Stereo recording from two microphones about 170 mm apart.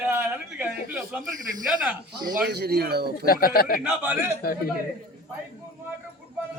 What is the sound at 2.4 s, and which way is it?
Speech, 75° right (ahead or behind).